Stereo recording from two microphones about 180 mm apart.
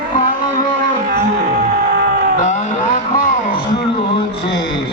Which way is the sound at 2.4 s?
45° left (ahead or behind).